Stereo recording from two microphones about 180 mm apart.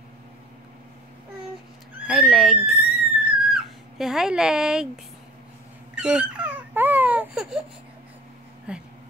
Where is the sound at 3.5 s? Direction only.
Centre (ahead or behind).